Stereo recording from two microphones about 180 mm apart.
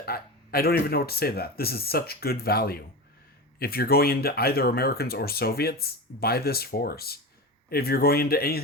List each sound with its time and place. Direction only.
0.0 s speech: 60° left (ahead or behind)